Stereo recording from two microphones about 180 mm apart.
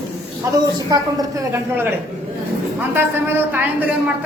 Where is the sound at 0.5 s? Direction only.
20° right (ahead or behind).